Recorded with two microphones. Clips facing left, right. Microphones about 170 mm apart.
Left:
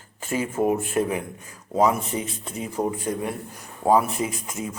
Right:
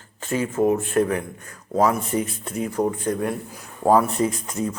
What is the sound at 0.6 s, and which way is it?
Speech, 10° left (ahead or behind).